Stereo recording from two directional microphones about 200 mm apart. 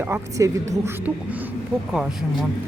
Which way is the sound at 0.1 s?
15° right (ahead or behind).